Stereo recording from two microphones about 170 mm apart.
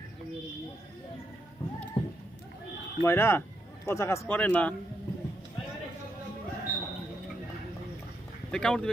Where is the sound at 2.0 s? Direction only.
30° left (ahead or behind).